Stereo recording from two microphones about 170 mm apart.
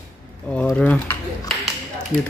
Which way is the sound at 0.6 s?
10° left (ahead or behind).